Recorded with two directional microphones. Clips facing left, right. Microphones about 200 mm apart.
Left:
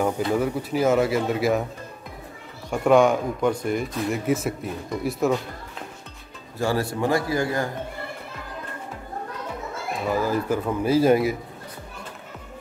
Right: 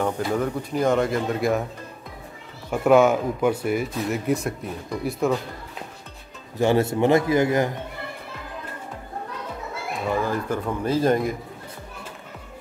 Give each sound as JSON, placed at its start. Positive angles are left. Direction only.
{"t": 0.4, "sound": "speech", "side_deg": 5}
{"t": 2.7, "sound": "speech", "side_deg": -5}
{"t": 6.6, "sound": "a man's voice", "side_deg": -20}
{"t": 10.0, "sound": "speech", "side_deg": 5}